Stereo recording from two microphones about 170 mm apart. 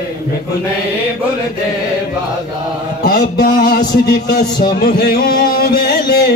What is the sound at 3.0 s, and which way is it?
Music, 65° left (ahead or behind).